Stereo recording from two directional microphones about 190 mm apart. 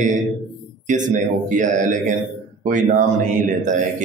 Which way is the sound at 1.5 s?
40° right (ahead or behind).